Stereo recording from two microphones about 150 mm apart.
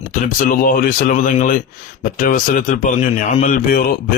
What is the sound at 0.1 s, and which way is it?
Speech, 60° left (ahead or behind).